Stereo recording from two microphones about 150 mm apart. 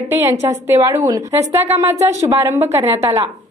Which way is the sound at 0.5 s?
20° right (ahead or behind).